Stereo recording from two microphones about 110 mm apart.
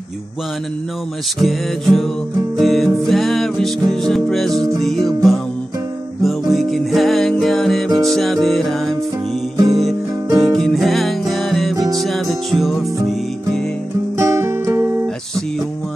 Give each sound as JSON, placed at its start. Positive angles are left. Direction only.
{"t": 1.4, "sound": "music", "side_deg": 0}
{"t": 14.1, "sound": "music", "side_deg": -25}